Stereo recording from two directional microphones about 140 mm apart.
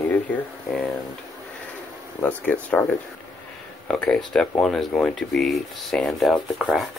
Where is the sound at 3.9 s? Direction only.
5° left (ahead or behind).